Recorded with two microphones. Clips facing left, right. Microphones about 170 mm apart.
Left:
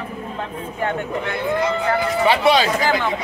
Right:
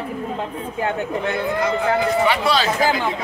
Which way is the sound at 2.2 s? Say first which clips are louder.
Left 3 dB; 25° left (ahead or behind).